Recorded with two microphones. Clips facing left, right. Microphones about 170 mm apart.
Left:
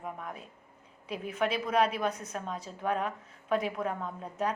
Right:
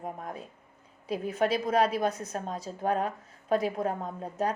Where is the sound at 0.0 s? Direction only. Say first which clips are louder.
Right 3 dB; 40° right (ahead or behind).